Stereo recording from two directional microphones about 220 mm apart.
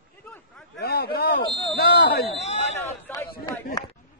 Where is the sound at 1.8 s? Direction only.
45° left (ahead or behind).